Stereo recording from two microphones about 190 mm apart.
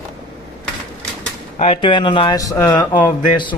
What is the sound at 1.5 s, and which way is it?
Speech, 30° left (ahead or behind).